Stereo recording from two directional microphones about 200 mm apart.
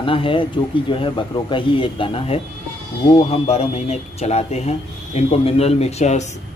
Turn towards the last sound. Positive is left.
turn(degrees=35)  # may be behind; listen again after turning